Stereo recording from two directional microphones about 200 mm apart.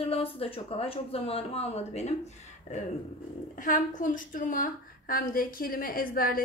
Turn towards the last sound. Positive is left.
turn(degrees=45)  # may be behind; listen again after turning